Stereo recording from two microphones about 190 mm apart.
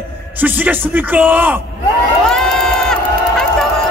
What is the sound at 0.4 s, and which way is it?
Speech, 10° right (ahead or behind).